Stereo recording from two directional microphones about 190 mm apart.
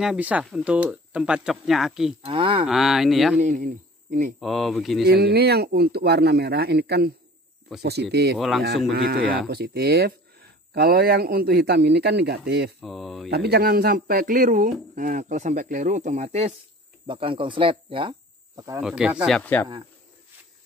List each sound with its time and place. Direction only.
0.0 s speech: 5° right (ahead or behind)
2.2 s speech: 30° right (ahead or behind)
2.6 s speech: centre (ahead or behind)
3.3 s speech: 40° right (ahead or behind)
4.4 s speech: centre (ahead or behind)
5.0 s speech: 60° right (ahead or behind)
8.4 s speech: centre (ahead or behind)
8.9 s speech: 55° right (ahead or behind)
12.8 s speech: centre (ahead or behind)
13.3 s speech: 60° right (ahead or behind); by 18.1 s 25° right (ahead or behind)
18.8 s speech: 5° right (ahead or behind)